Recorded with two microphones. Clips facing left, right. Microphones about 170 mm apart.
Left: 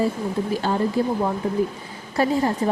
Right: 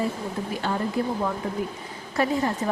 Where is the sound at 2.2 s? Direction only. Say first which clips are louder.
Left 3 dB; 30° left (ahead or behind).